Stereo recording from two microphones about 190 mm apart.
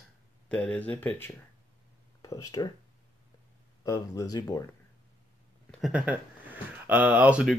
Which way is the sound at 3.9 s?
20° left (ahead or behind).